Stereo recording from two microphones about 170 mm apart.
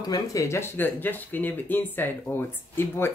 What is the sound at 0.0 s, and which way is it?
A woman's voice, 20° left (ahead or behind).